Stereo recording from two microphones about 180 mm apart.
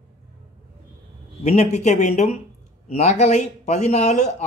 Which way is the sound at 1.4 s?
35° left (ahead or behind).